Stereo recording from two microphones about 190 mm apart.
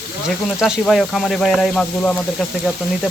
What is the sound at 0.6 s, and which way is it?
Speech, centre (ahead or behind).